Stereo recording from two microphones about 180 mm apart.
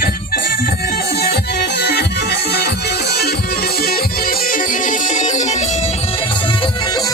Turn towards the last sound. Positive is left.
turn(degrees=40)  # may be behind; listen again after turning